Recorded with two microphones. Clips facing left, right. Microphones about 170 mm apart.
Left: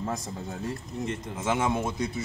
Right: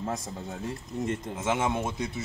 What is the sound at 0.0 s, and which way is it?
A man's voice, 5° right (ahead or behind).